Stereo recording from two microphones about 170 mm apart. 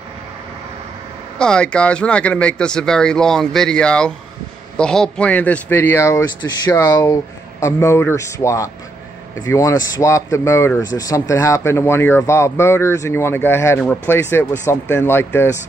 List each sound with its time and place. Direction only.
1.4 s speech: 5° left (ahead or behind)